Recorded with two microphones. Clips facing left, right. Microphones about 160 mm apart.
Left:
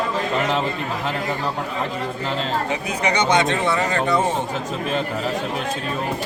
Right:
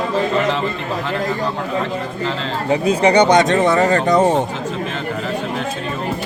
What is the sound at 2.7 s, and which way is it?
Speech, 35° right (ahead or behind).